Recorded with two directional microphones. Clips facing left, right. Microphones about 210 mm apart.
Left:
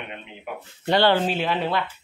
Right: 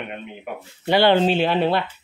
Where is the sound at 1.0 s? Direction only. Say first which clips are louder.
Right 6 dB; 25° right (ahead or behind).